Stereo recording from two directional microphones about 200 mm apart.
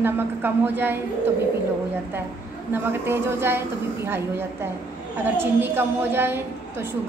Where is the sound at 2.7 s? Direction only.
10° right (ahead or behind).